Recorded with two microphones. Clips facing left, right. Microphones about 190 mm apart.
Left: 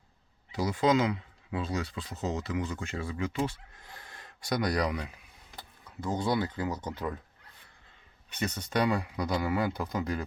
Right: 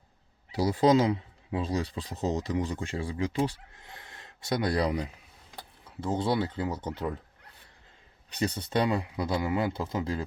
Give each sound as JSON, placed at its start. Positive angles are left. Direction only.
{"t": 0.5, "sound": "speech", "side_deg": -35}
{"t": 6.1, "sound": "speech", "side_deg": -30}
{"t": 8.3, "sound": "speech", "side_deg": -30}